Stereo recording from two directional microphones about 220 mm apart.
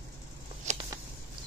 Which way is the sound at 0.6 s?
30° right (ahead or behind).